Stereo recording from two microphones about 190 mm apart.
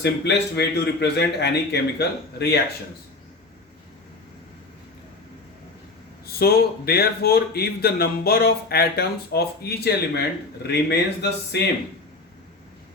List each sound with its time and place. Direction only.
0.0 s speech: 60° left (ahead or behind)
6.2 s speech: 55° left (ahead or behind)